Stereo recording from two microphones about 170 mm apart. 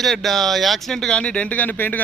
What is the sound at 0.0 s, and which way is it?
Speech, centre (ahead or behind).